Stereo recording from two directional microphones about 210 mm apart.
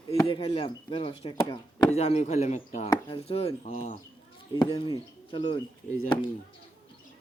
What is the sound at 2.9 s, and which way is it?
Chopping, 25° left (ahead or behind).